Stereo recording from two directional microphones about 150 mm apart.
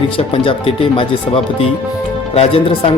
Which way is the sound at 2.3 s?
40° left (ahead or behind).